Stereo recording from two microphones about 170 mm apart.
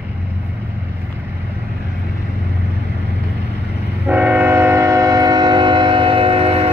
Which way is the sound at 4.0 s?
10° right (ahead or behind).